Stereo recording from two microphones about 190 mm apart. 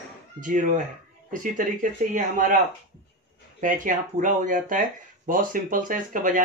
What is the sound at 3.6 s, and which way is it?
Speech, 45° right (ahead or behind).